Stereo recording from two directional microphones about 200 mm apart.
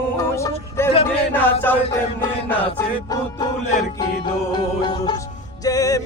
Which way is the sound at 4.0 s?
20° left (ahead or behind).